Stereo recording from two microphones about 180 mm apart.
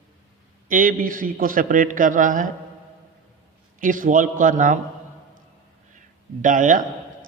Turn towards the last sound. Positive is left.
turn(degrees=-45)  # may be behind; listen again after turning